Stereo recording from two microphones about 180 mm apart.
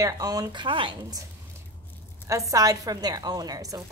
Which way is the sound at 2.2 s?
20° right (ahead or behind).